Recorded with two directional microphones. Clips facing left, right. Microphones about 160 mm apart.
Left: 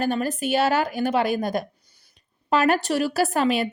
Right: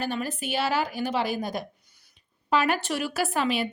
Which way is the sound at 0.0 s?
45° left (ahead or behind).